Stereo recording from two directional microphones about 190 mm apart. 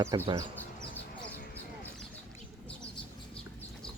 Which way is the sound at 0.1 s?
20° right (ahead or behind).